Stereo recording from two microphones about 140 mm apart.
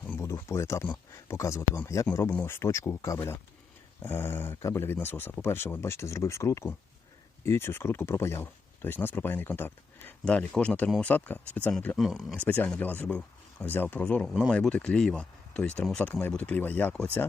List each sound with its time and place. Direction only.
0.1 s speech: 20° left (ahead or behind)
11.9 s speech: centre (ahead or behind)
12.4 s speech: 10° left (ahead or behind)